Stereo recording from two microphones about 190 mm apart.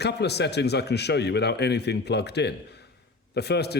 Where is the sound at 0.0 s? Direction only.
60° left (ahead or behind).